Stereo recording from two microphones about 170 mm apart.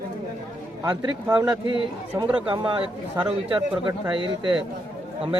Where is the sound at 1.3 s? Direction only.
25° right (ahead or behind).